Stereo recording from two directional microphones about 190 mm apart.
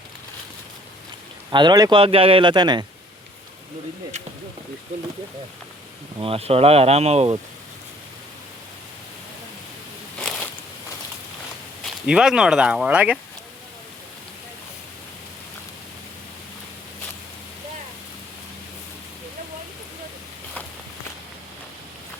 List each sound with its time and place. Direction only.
1.5 s a man's voice: 20° right (ahead or behind)
6.2 s speech: 30° right (ahead or behind)
10.2 s a sound: 5° left (ahead or behind)
12.0 s speech: 5° right (ahead or behind)